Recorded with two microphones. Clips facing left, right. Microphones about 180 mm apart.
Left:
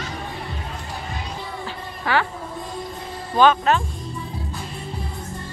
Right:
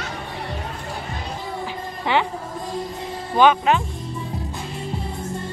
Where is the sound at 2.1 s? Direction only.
25° right (ahead or behind).